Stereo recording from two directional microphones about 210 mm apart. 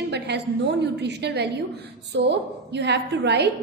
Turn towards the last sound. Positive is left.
turn(degrees=-55)  # may be behind; listen again after turning